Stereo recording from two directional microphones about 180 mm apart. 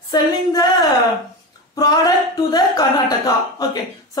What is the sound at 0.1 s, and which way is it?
Speech, 20° left (ahead or behind).